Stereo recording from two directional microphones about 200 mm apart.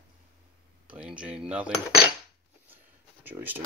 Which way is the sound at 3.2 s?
10° right (ahead or behind).